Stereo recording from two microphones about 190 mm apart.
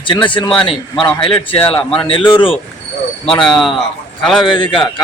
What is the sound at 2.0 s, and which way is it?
Speech, 30° left (ahead or behind).